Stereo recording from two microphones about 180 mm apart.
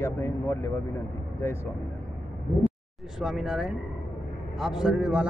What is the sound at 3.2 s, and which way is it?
Speech, centre (ahead or behind).